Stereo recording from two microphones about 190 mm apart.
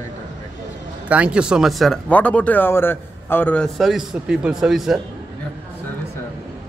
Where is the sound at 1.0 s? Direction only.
5° right (ahead or behind).